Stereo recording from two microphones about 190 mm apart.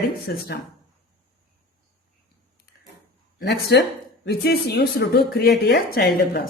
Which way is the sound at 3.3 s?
60° left (ahead or behind).